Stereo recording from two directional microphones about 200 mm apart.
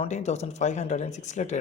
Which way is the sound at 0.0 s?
35° left (ahead or behind).